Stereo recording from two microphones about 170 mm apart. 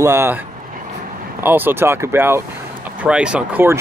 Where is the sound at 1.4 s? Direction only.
10° right (ahead or behind).